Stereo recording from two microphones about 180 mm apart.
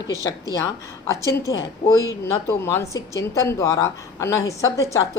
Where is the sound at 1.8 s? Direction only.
50° left (ahead or behind).